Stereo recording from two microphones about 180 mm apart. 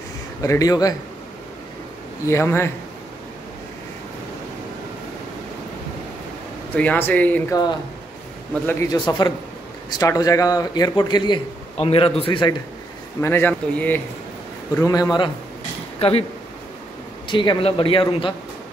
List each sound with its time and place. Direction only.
0.4 s a man's voice: 20° left (ahead or behind)
2.2 s speech: 15° left (ahead or behind)
6.7 s speech: 10° left (ahead or behind)
8.9 s a man's voice: 25° left (ahead or behind)
13.2 s speech: 10° left (ahead or behind)
14.8 s a man's voice: 20° left (ahead or behind)
17.3 s a man's voice: 25° left (ahead or behind)